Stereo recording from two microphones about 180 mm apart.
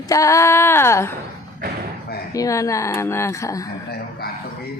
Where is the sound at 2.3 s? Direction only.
20° left (ahead or behind).